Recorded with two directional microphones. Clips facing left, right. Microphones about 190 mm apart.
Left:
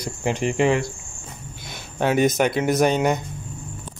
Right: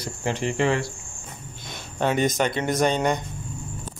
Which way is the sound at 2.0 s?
10° left (ahead or behind).